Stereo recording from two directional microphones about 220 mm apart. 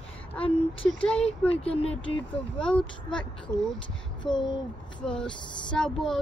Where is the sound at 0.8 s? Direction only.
5° left (ahead or behind).